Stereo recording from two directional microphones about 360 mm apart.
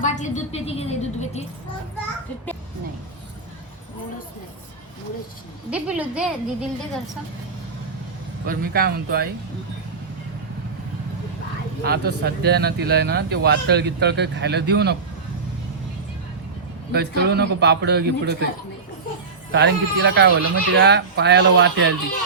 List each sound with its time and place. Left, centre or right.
0.0 s a woman's voice: centre
5.7 s a woman's voice: centre
8.4 s speech: right
11.9 s speech: right
16.9 s speech: right
19.5 s speech: right